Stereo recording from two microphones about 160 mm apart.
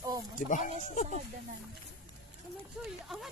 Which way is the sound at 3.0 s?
Centre (ahead or behind).